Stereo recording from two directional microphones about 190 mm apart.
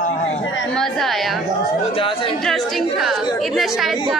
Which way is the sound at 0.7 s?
Centre (ahead or behind).